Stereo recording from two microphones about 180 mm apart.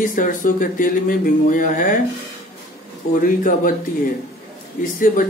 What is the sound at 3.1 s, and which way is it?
Speech, 50° left (ahead or behind).